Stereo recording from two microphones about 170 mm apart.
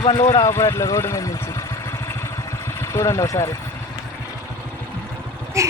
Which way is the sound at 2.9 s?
20° left (ahead or behind).